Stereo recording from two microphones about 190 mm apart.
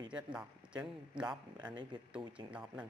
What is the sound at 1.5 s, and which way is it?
Speech, 25° right (ahead or behind).